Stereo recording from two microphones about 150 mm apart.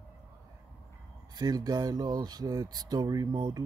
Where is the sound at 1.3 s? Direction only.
25° right (ahead or behind).